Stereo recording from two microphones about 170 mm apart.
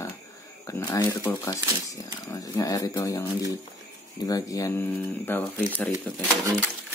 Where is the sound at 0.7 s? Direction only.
20° left (ahead or behind).